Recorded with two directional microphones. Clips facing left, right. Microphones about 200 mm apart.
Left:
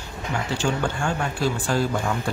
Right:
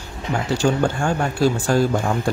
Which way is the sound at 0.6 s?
40° right (ahead or behind).